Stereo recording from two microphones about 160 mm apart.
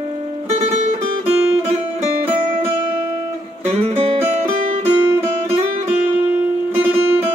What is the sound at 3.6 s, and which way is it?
Music, 40° right (ahead or behind).